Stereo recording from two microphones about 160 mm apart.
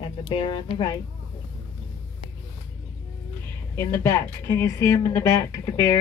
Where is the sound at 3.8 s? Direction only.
20° left (ahead or behind).